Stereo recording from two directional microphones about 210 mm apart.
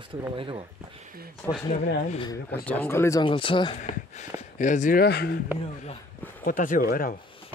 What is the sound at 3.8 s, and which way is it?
Speech, 35° left (ahead or behind).